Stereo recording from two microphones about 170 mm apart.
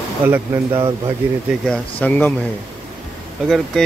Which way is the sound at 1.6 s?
5° left (ahead or behind).